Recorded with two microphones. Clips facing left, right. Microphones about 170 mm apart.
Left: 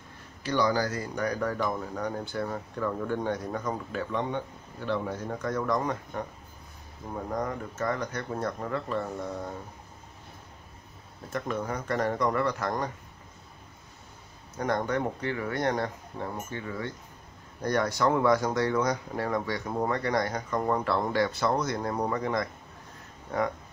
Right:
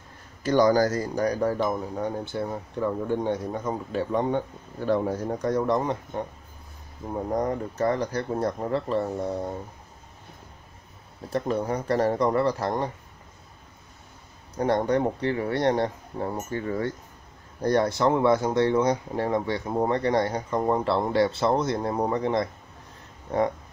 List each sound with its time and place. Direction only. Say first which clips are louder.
0.4 s speech: right 7 dB; 45° right (ahead or behind)
11.2 s speech: right 5 dB; 35° right (ahead or behind)
14.6 s speech: right 5 dB; 30° right (ahead or behind)